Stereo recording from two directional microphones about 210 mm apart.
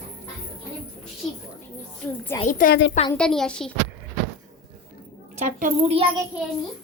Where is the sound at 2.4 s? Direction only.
40° left (ahead or behind).